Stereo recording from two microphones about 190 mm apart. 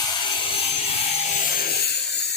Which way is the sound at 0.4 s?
30° left (ahead or behind).